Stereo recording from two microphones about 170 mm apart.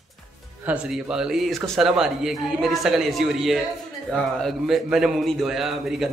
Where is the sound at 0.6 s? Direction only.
5° right (ahead or behind).